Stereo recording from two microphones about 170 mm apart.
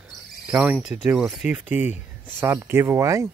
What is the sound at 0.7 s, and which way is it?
Speech, 5° right (ahead or behind).